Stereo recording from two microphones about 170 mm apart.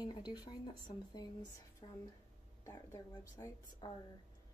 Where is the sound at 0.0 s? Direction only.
25° left (ahead or behind).